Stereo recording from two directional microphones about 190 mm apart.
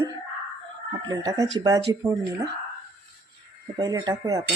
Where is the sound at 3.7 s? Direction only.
20° right (ahead or behind).